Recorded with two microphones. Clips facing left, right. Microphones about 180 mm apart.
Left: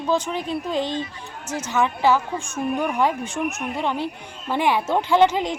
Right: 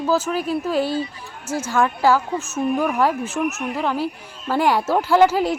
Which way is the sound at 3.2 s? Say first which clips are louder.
Right 3 dB; 5° right (ahead or behind).